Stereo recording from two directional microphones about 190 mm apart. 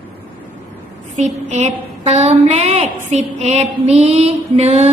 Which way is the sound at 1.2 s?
35° right (ahead or behind).